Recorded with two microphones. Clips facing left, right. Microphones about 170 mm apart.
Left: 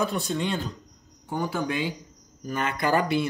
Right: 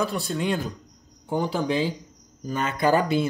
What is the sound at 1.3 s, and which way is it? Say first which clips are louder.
Speech: right 3 dB; 25° right (ahead or behind).